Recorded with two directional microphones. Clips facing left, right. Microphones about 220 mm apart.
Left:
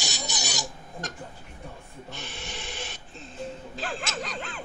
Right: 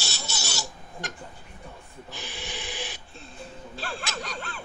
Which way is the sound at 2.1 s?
Centre (ahead or behind).